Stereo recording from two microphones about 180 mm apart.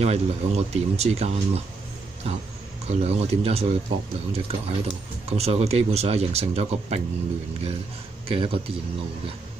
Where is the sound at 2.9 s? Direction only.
35° right (ahead or behind).